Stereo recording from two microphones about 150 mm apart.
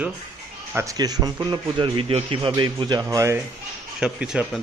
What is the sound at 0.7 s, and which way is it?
A man's voice, 20° right (ahead or behind).